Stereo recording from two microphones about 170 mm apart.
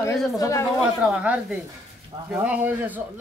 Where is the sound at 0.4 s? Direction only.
20° left (ahead or behind).